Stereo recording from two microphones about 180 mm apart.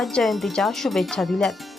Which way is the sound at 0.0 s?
Centre (ahead or behind).